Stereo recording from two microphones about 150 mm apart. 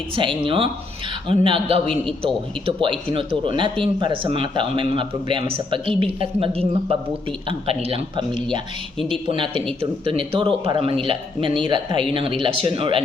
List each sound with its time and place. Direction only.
0.2 s speech: 35° right (ahead or behind)